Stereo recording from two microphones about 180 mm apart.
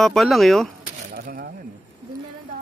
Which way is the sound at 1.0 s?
50° right (ahead or behind).